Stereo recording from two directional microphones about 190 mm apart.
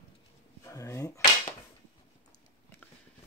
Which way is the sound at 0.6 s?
15° left (ahead or behind).